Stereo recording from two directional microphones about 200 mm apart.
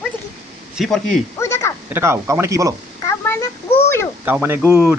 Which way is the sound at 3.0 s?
10° left (ahead or behind).